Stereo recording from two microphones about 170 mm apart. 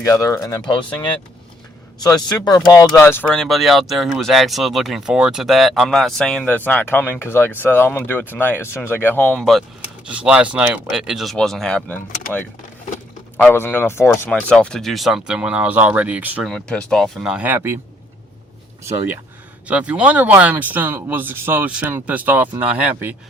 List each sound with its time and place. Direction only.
0.0 s speech: 20° left (ahead or behind)
13.3 s speech: 10° left (ahead or behind); by 16.5 s 10° right (ahead or behind)
16.5 s speech: 5° left (ahead or behind); by 17.7 s 10° right (ahead or behind)
18.9 s speech: 15° right (ahead or behind)